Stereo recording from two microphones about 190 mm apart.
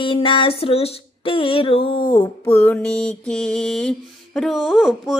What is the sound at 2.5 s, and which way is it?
Music, 10° left (ahead or behind).